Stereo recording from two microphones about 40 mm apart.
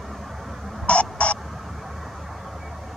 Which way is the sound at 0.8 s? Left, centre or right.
Left.